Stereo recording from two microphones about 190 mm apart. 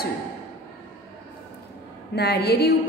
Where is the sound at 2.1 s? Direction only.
60° left (ahead or behind).